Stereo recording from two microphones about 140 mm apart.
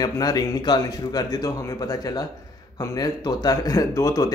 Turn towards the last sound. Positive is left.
turn(degrees=25)  # may be behind; listen again after turning